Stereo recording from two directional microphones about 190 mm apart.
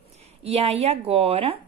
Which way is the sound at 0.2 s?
35° right (ahead or behind).